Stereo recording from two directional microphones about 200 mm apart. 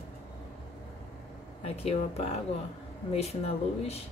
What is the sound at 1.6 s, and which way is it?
Speech, 30° left (ahead or behind).